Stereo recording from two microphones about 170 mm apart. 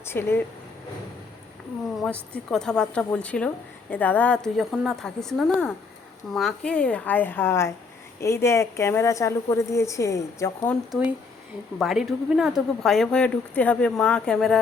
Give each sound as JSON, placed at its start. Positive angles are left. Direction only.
{"t": 0.0, "sound": "a woman's voice", "side_deg": 15}
{"t": 2.0, "sound": "a woman's voice", "side_deg": 5}
{"t": 11.0, "sound": "a woman's voice", "side_deg": -5}